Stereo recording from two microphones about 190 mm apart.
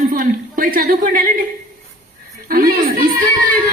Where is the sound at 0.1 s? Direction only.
45° right (ahead or behind).